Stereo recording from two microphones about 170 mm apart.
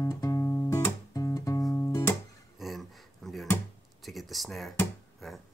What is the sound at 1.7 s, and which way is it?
Music, 15° left (ahead or behind).